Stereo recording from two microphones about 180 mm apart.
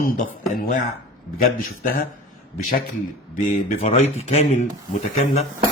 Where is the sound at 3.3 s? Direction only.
45° left (ahead or behind).